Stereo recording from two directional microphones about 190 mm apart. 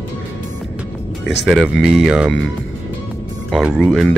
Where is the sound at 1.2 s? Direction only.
65° left (ahead or behind).